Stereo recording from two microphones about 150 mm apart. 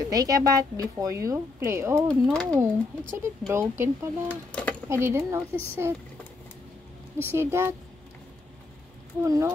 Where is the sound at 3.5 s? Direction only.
15° right (ahead or behind).